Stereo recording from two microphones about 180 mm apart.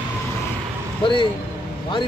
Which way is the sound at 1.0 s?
25° left (ahead or behind).